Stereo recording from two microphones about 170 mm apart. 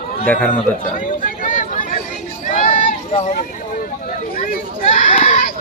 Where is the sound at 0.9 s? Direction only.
55° left (ahead or behind).